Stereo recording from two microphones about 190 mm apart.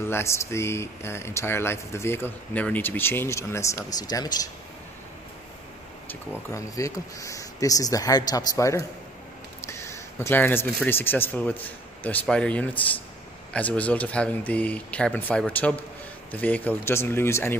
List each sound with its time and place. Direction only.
0.1 s speech: 15° left (ahead or behind)
6.0 s speech: 15° left (ahead or behind)